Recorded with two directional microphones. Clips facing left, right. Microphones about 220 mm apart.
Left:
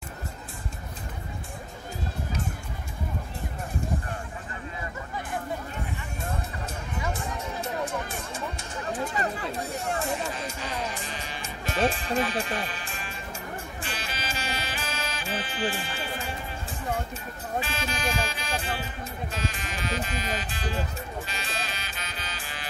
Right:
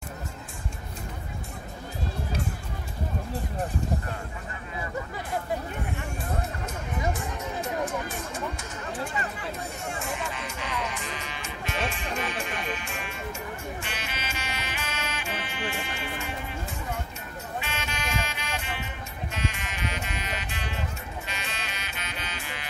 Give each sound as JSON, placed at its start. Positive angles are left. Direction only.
{"t": 9.8, "sound": "music", "side_deg": 35}
{"t": 17.6, "sound": "music", "side_deg": 35}